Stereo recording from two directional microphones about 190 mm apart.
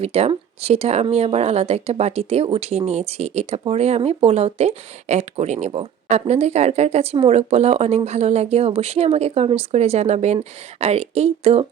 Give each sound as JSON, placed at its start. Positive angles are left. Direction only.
{"t": 0.0, "sound": "speech", "side_deg": -30}